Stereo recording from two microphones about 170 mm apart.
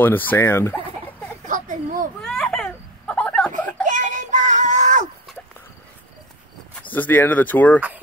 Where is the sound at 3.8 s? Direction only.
45° right (ahead or behind).